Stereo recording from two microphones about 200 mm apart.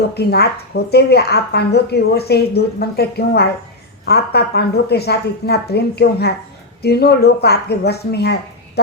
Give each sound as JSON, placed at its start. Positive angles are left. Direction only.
{"t": 0.1, "sound": "a woman's voice", "side_deg": 55}